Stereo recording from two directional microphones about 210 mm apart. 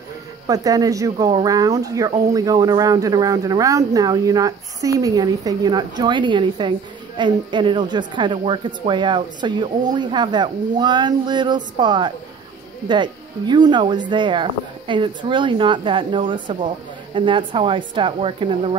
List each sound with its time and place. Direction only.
0.5 s speech: 15° right (ahead or behind)